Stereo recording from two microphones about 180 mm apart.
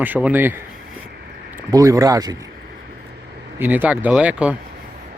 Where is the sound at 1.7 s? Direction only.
20° right (ahead or behind).